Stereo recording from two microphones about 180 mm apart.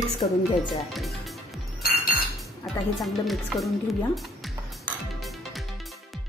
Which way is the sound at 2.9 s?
Centre (ahead or behind).